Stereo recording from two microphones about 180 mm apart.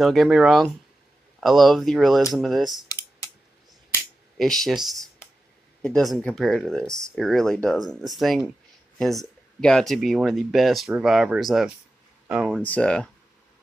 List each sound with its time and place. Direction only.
0.0 s speech: centre (ahead or behind)
2.9 s computer keyboard: 20° left (ahead or behind)
4.4 s speech: centre (ahead or behind)
12.6 s speech: 5° left (ahead or behind)